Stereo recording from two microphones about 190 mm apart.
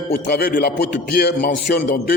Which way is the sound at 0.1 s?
55° left (ahead or behind).